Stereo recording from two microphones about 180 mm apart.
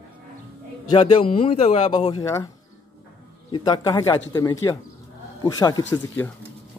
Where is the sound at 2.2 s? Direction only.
15° left (ahead or behind).